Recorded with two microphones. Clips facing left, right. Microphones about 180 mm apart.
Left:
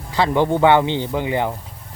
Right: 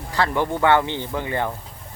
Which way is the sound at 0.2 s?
20° left (ahead or behind).